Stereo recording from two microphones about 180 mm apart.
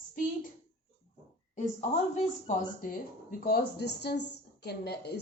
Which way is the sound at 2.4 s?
50° left (ahead or behind).